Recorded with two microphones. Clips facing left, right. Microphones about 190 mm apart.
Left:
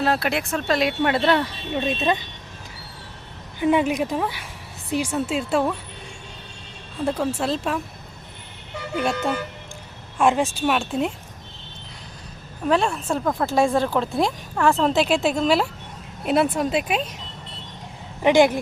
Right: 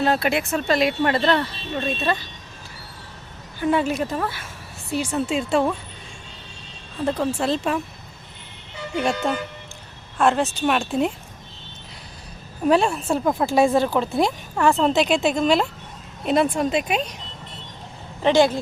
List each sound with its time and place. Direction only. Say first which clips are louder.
0.0 s speech: right 2 dB; centre (ahead or behind); by 2.2 s 20° left (ahead or behind)
3.6 s speech: left 1 dB; 15° left (ahead or behind)
7.0 s speech: right 1 dB; 10° left (ahead or behind)
10.2 s speech: even; 10° left (ahead or behind)
12.6 s speech: right 2 dB; 10° right (ahead or behind)
18.2 s speech: left 1 dB; 15° left (ahead or behind)